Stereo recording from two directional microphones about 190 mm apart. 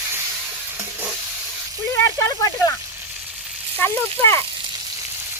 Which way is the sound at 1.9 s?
15° left (ahead or behind).